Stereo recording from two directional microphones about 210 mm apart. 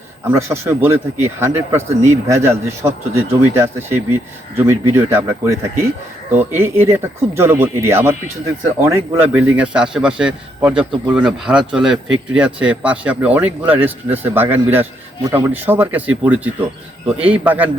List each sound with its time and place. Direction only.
0.3 s speech: 10° right (ahead or behind)